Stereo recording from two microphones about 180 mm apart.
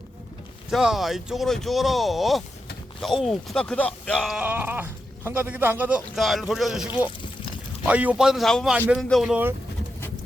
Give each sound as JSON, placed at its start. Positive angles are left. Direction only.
{"t": 0.7, "sound": "speech", "side_deg": 0}